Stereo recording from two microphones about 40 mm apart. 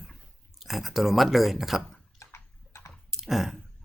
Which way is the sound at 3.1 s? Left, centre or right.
Centre.